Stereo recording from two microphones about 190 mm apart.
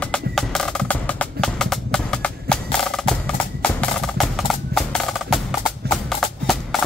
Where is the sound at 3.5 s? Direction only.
5° left (ahead or behind).